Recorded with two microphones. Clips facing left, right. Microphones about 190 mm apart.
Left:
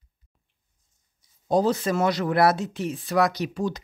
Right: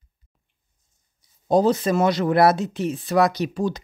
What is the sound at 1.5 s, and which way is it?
Speech, 20° right (ahead or behind).